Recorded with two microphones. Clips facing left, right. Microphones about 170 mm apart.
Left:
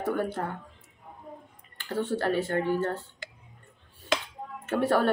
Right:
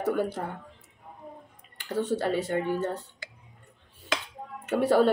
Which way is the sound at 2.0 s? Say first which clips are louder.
Left 1 dB; 20° right (ahead or behind).